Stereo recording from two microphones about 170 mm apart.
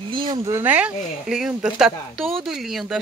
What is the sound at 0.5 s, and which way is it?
Speech, 10° right (ahead or behind).